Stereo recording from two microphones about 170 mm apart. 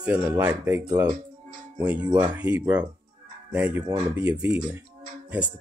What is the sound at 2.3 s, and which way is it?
Speech, 10° right (ahead or behind).